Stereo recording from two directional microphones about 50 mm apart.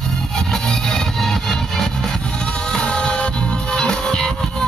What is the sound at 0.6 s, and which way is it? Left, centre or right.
Music, centre.